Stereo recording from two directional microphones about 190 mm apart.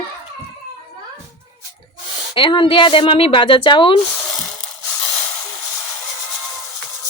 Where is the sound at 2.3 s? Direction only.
25° left (ahead or behind).